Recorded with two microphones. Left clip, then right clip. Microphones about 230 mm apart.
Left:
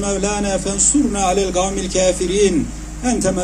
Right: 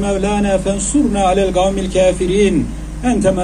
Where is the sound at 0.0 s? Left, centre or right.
Left.